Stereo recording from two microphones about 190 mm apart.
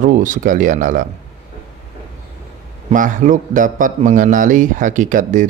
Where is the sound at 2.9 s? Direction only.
45° right (ahead or behind).